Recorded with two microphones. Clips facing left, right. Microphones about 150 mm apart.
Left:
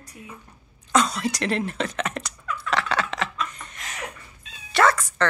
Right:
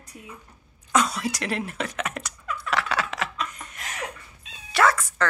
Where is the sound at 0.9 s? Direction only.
10° right (ahead or behind).